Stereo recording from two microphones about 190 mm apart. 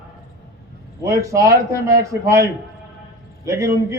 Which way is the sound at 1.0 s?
15° right (ahead or behind).